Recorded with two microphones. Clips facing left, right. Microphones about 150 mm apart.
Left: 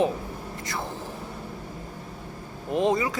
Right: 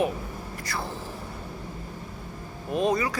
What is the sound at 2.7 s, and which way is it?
Speech, 20° left (ahead or behind).